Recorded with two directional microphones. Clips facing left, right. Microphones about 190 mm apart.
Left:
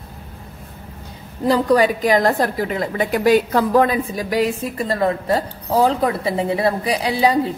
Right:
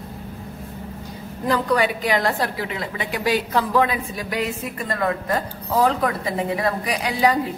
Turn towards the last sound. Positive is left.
turn(degrees=30)  # may be behind; listen again after turning